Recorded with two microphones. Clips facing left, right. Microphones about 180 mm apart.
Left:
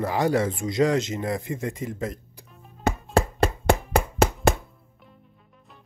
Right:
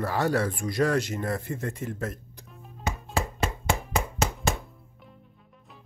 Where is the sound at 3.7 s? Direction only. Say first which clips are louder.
Left 6 dB; 60° left (ahead or behind).